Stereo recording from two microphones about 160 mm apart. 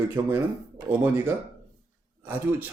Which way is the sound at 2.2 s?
15° right (ahead or behind).